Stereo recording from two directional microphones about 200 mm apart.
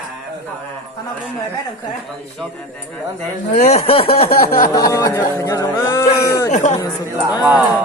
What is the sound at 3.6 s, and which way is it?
Speech, 30° left (ahead or behind).